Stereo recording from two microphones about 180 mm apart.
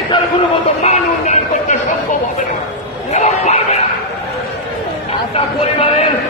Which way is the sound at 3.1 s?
40° left (ahead or behind).